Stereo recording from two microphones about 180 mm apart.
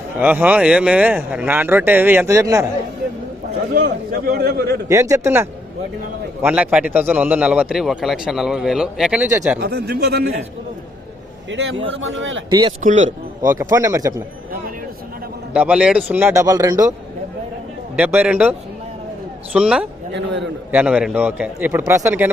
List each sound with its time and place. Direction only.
0.2 s speech: 10° right (ahead or behind)
3.7 s a man's voice: 55° right (ahead or behind)
4.9 s a man's voice: 15° right (ahead or behind)
9.6 s a man's voice: 60° right (ahead or behind)
11.5 s speech: 90° right
12.5 s speech: 25° right (ahead or behind)
12.8 s speech: 40° right (ahead or behind)
13.4 s speech: 20° right (ahead or behind)
15.5 s speech: 5° right (ahead or behind)
17.9 s speech: 10° right (ahead or behind)
19.5 s a man's voice: 5° right (ahead or behind)
20.1 s a man's voice: 80° right
20.7 s speech: 10° right (ahead or behind)